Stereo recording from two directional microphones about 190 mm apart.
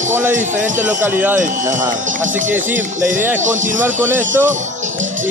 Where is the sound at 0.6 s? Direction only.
40° right (ahead or behind).